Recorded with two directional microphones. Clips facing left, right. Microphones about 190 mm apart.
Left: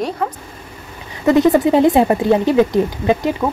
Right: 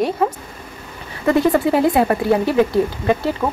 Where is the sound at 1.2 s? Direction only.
20° left (ahead or behind).